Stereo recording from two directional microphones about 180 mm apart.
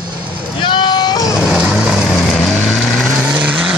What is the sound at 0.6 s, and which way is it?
Vehicle, 25° left (ahead or behind).